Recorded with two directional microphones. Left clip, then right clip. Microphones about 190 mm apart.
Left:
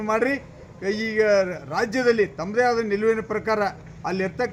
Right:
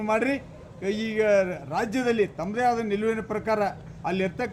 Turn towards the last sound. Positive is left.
turn(degrees=-5)  # may be behind; listen again after turning